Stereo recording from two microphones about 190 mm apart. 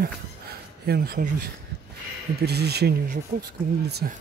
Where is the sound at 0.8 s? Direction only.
50° right (ahead or behind).